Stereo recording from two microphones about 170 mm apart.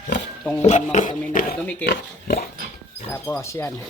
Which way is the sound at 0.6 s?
45° left (ahead or behind).